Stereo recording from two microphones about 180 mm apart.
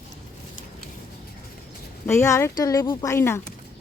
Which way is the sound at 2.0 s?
15° left (ahead or behind).